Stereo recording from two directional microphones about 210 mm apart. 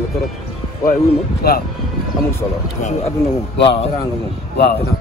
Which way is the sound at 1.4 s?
45° left (ahead or behind).